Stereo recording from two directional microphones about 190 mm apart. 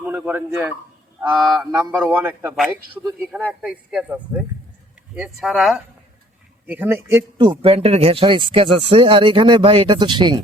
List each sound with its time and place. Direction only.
0.0 s a man's voice: 10° right (ahead or behind)
7.6 s speech: 30° right (ahead or behind)